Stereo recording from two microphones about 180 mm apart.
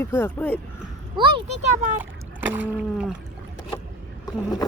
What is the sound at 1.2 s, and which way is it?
Speech, 30° right (ahead or behind).